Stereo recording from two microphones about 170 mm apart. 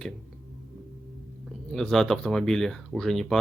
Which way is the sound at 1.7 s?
Centre (ahead or behind).